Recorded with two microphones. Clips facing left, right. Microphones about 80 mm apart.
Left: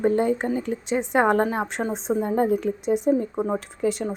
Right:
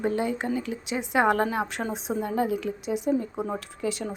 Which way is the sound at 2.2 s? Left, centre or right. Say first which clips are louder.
Left 4 dB; left.